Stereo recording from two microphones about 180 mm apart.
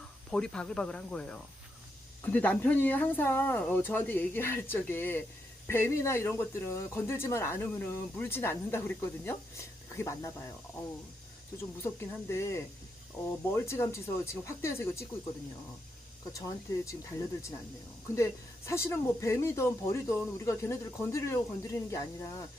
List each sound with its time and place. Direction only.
0.3 s speech: 5° left (ahead or behind)
11.5 s speech: 15° left (ahead or behind)
16.4 s speech: 20° left (ahead or behind)
18.1 s speech: 15° left (ahead or behind)